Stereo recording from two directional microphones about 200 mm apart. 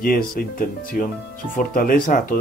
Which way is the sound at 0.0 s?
45° left (ahead or behind).